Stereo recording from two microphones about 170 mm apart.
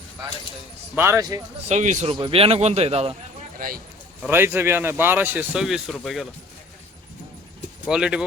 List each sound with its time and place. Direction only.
0.9 s speech: 15° right (ahead or behind)
1.6 s speech: 45° right (ahead or behind)
2.1 s speech: 30° right (ahead or behind)
4.2 s speech: 10° right (ahead or behind)
7.9 s speech: 5° right (ahead or behind)